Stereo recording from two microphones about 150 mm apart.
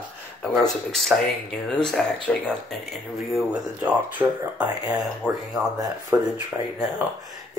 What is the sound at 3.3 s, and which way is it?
Speech, 10° right (ahead or behind).